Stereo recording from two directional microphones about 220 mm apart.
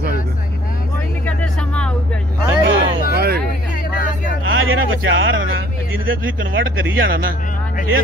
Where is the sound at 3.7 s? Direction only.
40° left (ahead or behind).